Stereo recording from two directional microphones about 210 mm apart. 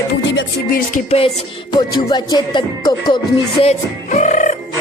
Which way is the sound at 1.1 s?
25° left (ahead or behind).